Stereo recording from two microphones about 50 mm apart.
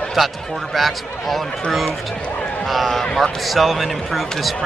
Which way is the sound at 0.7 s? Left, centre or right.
Centre.